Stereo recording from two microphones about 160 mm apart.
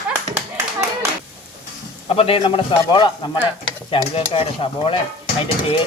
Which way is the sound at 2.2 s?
35° left (ahead or behind).